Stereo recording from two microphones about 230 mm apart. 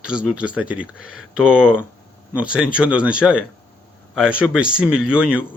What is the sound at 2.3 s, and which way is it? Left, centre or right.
Speech, centre.